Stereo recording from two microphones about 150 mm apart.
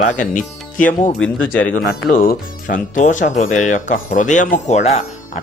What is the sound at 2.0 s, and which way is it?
Speech, 70° left (ahead or behind).